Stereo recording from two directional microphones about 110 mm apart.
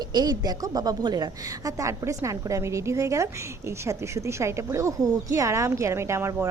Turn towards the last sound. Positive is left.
turn(degrees=-25)  # may be behind; listen again after turning